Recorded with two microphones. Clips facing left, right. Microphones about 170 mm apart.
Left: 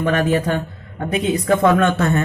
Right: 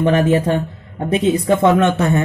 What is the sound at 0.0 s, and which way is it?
Speech, 25° right (ahead or behind).